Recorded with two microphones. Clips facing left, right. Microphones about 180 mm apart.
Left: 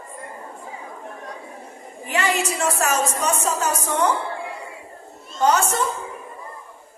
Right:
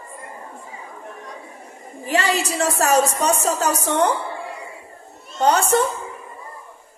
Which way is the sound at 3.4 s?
35° right (ahead or behind).